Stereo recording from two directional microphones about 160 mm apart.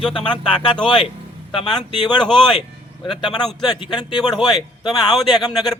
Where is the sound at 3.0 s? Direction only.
30° left (ahead or behind).